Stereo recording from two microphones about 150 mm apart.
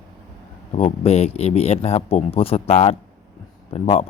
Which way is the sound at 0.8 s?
45° left (ahead or behind).